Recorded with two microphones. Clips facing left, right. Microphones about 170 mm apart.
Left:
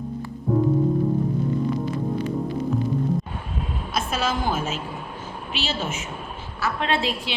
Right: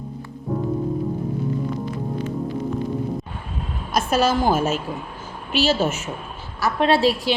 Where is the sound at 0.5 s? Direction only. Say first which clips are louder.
Left 4 dB; centre (ahead or behind).